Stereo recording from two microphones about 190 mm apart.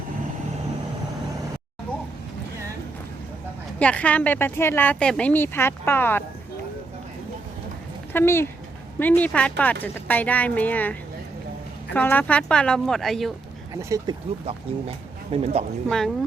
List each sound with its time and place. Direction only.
3.8 s speech: 5° left (ahead or behind)
8.1 s speech: 15° left (ahead or behind)
11.9 s a woman's voice: 10° left (ahead or behind)
14.1 s speech: 25° right (ahead or behind)
15.9 s a woman's voice: centre (ahead or behind)